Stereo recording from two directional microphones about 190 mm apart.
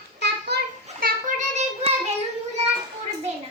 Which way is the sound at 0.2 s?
60° right (ahead or behind).